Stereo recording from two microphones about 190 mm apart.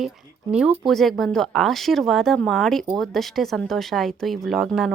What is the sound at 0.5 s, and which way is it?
Speech, 5° right (ahead or behind).